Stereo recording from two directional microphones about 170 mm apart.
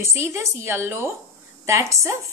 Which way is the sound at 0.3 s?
15° right (ahead or behind).